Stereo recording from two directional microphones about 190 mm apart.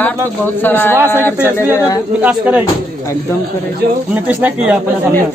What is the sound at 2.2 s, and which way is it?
Speech, 10° right (ahead or behind).